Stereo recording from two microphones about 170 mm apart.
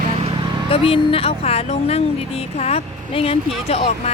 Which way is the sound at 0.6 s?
35° left (ahead or behind).